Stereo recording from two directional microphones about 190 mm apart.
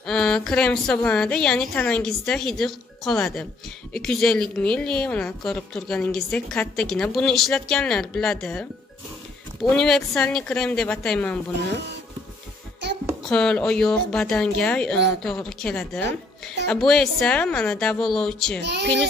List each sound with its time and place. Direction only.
0.0 s a woman's voice: 5° left (ahead or behind)
11.7 s speech: 65° right (ahead or behind)
13.2 s a woman's voice: 5° left (ahead or behind)
18.6 s speech: 60° right (ahead or behind)